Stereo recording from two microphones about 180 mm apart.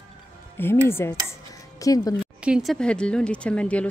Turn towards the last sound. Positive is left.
turn(degrees=5)  # may be behind; listen again after turning